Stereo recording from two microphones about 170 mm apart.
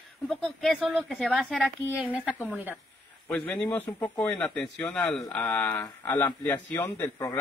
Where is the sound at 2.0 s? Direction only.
5° right (ahead or behind).